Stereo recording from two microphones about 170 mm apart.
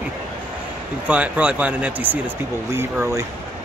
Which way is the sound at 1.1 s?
5° right (ahead or behind).